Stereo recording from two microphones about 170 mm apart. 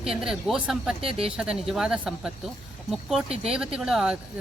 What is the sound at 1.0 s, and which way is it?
Speech, 35° right (ahead or behind).